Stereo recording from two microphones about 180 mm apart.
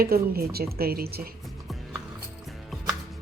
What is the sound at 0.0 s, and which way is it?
Speech, 55° right (ahead or behind).